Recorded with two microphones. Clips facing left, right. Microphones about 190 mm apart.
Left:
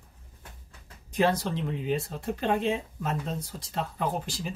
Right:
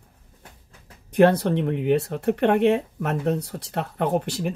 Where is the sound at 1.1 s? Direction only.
60° right (ahead or behind).